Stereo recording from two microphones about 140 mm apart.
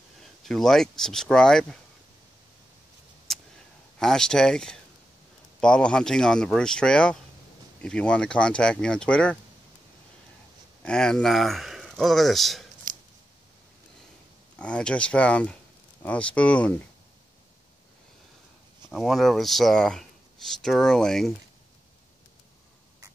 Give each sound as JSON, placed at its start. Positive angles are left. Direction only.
{"t": 0.4, "sound": "speech", "side_deg": 0}
{"t": 3.3, "sound": "a sound", "side_deg": 0}
{"t": 4.0, "sound": "speech", "side_deg": 5}
{"t": 10.8, "sound": "speech", "side_deg": 5}
{"t": 12.9, "sound": "a sound", "side_deg": -75}
{"t": 14.6, "sound": "speech", "side_deg": 5}
{"t": 18.9, "sound": "speech", "side_deg": 0}